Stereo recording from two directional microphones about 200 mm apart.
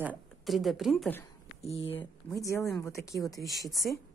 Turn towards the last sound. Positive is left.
turn(degrees=0)  # may be behind; listen again after turning